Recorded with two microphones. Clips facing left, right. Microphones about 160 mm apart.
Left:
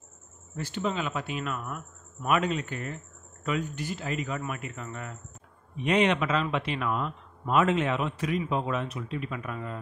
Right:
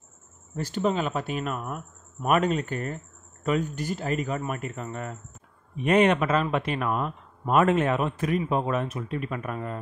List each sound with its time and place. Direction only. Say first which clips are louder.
0.6 s speech: right 5 dB; 40° right (ahead or behind)